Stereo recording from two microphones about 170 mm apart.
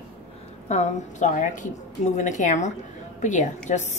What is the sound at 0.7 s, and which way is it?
A woman's voice, 45° left (ahead or behind).